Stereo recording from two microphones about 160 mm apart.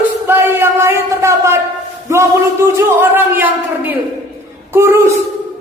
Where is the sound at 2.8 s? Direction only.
10° right (ahead or behind).